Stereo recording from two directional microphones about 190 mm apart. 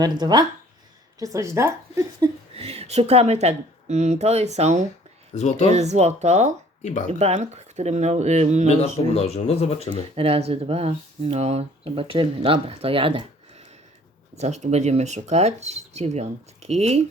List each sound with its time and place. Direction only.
0.0 s a woman's voice: 20° right (ahead or behind)
2.6 s speech: 30° right (ahead or behind)
5.3 s speech: 35° left (ahead or behind)
5.7 s speech: 35° right (ahead or behind)
6.8 s speech: 40° left (ahead or behind)
7.1 s speech: 35° right (ahead or behind)
8.8 s speech: 35° left (ahead or behind)
10.2 s speech: 30° right (ahead or behind)
14.3 s speech: 35° right (ahead or behind)